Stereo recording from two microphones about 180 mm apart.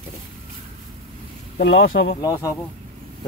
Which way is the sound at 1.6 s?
70° left (ahead or behind).